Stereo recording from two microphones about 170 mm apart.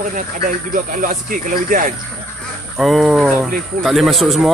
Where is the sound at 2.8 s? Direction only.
Centre (ahead or behind).